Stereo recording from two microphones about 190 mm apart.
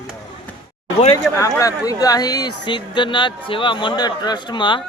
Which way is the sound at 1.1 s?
15° left (ahead or behind).